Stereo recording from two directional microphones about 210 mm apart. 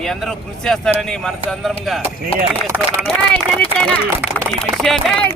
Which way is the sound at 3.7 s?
5° left (ahead or behind).